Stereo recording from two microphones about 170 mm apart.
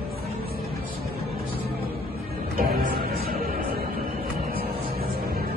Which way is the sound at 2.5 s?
60° right (ahead or behind).